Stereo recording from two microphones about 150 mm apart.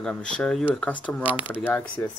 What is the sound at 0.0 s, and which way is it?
Speech, 5° left (ahead or behind).